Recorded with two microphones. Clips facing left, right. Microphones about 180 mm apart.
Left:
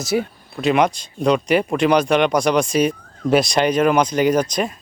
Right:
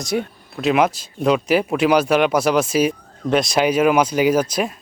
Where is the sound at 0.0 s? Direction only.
5° left (ahead or behind).